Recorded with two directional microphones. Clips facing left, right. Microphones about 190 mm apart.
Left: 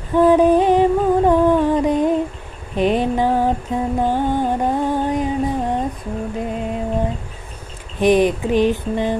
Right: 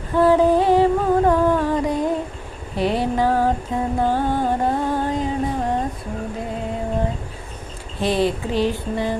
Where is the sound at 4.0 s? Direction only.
15° left (ahead or behind).